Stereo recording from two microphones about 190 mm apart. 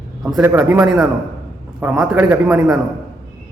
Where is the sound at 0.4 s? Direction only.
10° right (ahead or behind).